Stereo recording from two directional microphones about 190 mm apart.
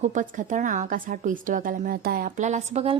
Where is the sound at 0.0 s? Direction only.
40° right (ahead or behind).